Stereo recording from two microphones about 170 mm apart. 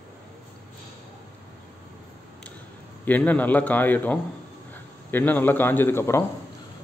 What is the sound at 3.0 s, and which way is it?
A man's voice, 10° left (ahead or behind).